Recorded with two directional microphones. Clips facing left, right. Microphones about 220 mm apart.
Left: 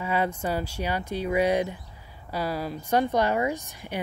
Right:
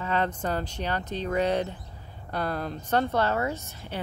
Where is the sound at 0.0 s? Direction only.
10° left (ahead or behind).